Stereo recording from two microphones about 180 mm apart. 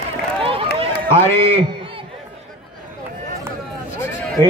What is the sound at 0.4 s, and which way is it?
Run, 30° right (ahead or behind).